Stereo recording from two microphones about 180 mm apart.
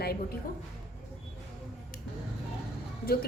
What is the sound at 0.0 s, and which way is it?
Speech, 60° left (ahead or behind).